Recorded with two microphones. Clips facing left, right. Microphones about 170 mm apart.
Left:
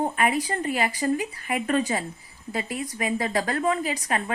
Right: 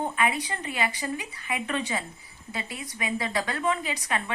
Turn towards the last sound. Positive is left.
turn(degrees=40)  # may be behind; listen again after turning